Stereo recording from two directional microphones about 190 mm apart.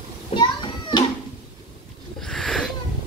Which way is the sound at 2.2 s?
Centre (ahead or behind).